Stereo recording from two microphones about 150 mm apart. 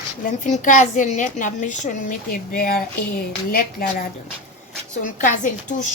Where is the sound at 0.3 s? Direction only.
60° left (ahead or behind); by 3.9 s 75° left (ahead or behind).